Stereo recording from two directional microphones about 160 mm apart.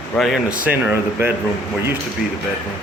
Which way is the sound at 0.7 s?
10° right (ahead or behind).